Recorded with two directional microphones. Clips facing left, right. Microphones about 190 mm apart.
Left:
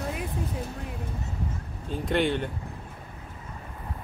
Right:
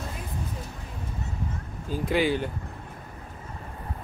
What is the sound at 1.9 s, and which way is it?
Speech, centre (ahead or behind).